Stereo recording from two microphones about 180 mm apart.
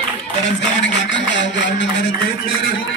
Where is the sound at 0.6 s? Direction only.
80° left.